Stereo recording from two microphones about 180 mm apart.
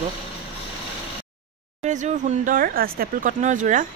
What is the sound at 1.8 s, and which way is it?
Speech, 40° right (ahead or behind).